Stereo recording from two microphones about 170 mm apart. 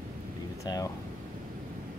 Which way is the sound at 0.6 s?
25° left (ahead or behind).